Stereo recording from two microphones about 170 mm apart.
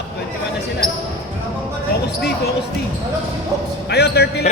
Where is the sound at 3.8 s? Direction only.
75° left (ahead or behind).